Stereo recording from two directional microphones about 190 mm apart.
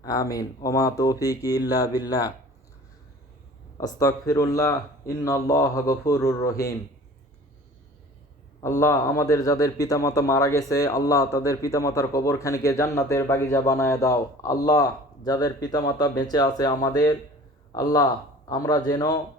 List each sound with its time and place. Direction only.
0.0 s speech: 20° left (ahead or behind)
3.8 s a man's voice: 20° left (ahead or behind)
8.6 s a man's voice: 15° left (ahead or behind)